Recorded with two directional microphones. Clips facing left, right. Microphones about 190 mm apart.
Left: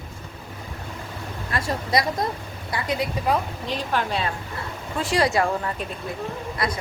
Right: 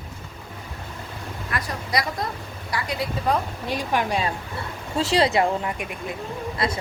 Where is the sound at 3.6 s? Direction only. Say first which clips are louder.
Right 1 dB; 10° right (ahead or behind).